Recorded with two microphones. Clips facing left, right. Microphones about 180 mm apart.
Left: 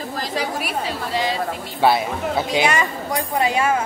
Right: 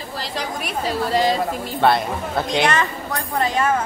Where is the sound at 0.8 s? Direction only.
40° right (ahead or behind).